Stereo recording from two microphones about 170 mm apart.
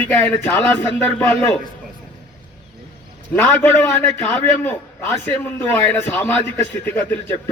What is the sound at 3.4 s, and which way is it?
Speech, 5° left (ahead or behind).